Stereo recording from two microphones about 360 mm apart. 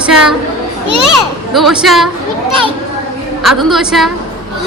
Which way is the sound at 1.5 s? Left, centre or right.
Centre.